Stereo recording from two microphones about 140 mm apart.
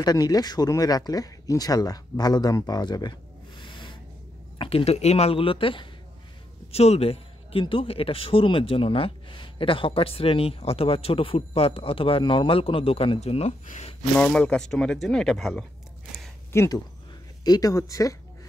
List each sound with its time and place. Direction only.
0.0 s a man's voice: 25° left (ahead or behind); by 13.9 s 55° left (ahead or behind)
14.1 s speech: 10° left (ahead or behind)
16.5 s speech: 25° left (ahead or behind)